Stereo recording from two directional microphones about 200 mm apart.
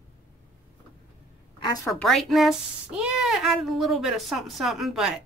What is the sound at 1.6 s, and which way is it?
Speech, 20° left (ahead or behind).